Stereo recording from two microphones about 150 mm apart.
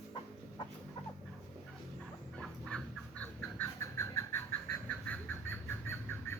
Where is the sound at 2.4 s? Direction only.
5° left (ahead or behind).